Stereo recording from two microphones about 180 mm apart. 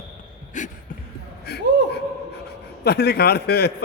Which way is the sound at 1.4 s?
65° left (ahead or behind).